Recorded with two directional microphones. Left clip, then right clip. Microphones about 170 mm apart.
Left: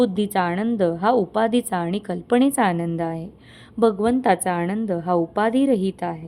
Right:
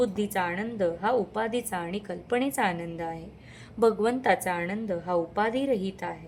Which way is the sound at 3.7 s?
20° left (ahead or behind).